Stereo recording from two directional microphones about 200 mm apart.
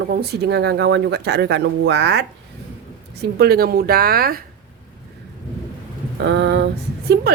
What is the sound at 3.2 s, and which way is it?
Speech, 55° right (ahead or behind).